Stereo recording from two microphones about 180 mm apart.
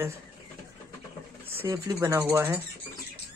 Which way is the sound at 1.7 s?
15° right (ahead or behind).